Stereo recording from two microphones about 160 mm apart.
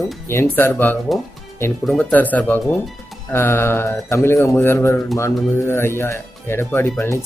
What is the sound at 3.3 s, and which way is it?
Speech, 15° left (ahead or behind).